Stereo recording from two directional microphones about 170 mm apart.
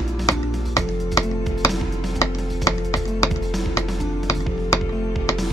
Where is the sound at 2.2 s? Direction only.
20° left (ahead or behind).